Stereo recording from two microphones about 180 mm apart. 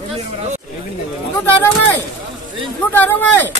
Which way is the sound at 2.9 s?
10° left (ahead or behind).